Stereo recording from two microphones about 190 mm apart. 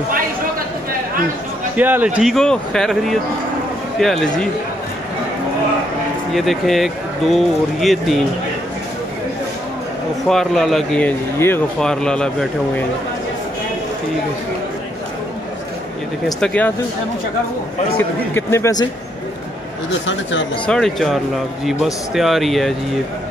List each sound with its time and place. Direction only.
1.8 s speech: 10° right (ahead or behind)
6.3 s speech: centre (ahead or behind)
10.2 s speech: centre (ahead or behind)
16.3 s speech: 5° left (ahead or behind)
17.9 s speech: 10° left (ahead or behind)
19.9 s speech: 75° left (ahead or behind)
20.6 s speech: 5° left (ahead or behind)